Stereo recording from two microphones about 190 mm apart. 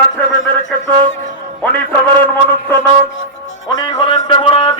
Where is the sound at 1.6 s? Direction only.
10° left (ahead or behind).